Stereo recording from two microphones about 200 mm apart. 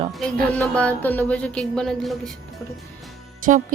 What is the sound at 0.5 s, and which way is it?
Speech, 5° left (ahead or behind).